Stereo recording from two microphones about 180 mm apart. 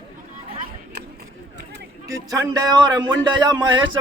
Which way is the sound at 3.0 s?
25° right (ahead or behind).